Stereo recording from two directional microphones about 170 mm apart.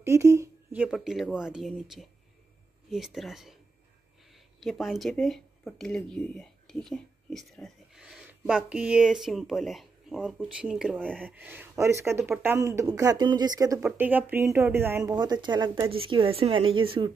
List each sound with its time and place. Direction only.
0.0 s speech: 15° right (ahead or behind)
0.8 s speech: centre (ahead or behind)
11.2 s speech: 10° right (ahead or behind)
13.8 s speech: 10° right (ahead or behind)
15.1 s speech: 25° right (ahead or behind)